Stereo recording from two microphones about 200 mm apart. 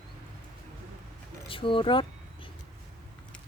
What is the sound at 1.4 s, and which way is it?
Speech, 25° left (ahead or behind).